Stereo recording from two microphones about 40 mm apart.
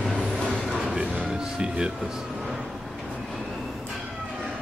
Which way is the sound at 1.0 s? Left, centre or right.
Right.